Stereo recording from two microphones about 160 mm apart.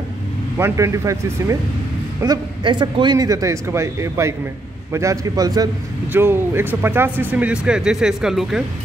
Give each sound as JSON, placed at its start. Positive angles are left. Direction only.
{"t": 0.6, "sound": "a man's voice", "side_deg": -15}
{"t": 2.2, "sound": "a man's voice", "side_deg": -30}